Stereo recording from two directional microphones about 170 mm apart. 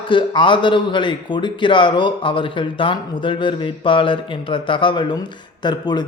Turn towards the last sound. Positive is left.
turn(degrees=25)  # may be behind; listen again after turning